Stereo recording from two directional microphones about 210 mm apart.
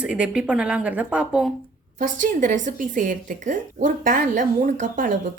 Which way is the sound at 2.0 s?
40° right (ahead or behind).